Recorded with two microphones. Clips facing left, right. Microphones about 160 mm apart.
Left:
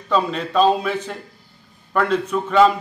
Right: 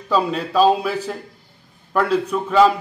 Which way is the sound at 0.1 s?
5° right (ahead or behind).